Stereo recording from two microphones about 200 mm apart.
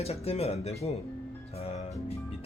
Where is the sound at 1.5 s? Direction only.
30° left (ahead or behind).